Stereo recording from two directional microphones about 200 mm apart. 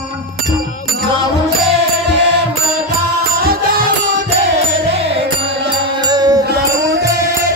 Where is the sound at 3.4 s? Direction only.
45° right (ahead or behind).